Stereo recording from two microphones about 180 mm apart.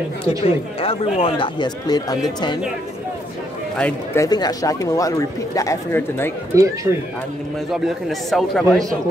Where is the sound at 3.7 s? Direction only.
5° left (ahead or behind).